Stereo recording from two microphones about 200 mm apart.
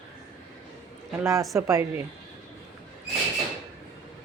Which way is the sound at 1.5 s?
15° right (ahead or behind).